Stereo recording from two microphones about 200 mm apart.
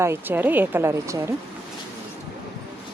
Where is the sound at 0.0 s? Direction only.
10° right (ahead or behind).